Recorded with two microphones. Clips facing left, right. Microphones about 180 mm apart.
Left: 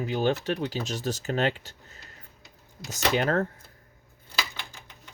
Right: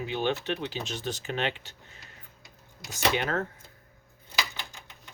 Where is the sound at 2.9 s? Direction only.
40° left (ahead or behind).